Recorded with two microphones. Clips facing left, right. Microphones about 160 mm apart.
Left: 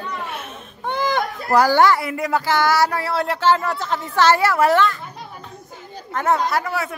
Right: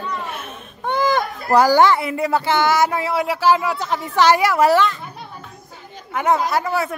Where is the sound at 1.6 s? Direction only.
15° right (ahead or behind).